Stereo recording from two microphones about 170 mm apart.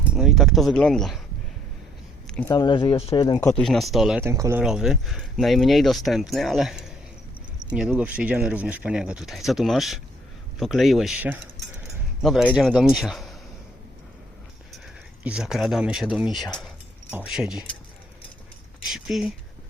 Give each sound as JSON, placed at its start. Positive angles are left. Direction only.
{"t": 0.1, "sound": "speech", "side_deg": 0}
{"t": 2.2, "sound": "a sound", "side_deg": 5}
{"t": 2.5, "sound": "speech", "side_deg": 25}
{"t": 3.4, "sound": "speech", "side_deg": 5}
{"t": 4.2, "sound": "speech", "side_deg": -15}
{"t": 4.6, "sound": "speech", "side_deg": -5}
{"t": 15.2, "sound": "speech", "side_deg": -5}
{"t": 18.9, "sound": "speech", "side_deg": 0}